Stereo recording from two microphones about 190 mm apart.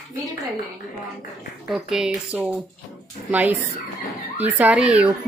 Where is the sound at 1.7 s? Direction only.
5° right (ahead or behind).